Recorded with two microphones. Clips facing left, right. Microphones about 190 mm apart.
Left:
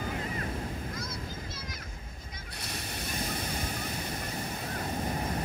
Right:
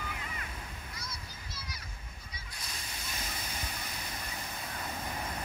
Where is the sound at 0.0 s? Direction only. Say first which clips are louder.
Left 8 dB; 40° left (ahead or behind).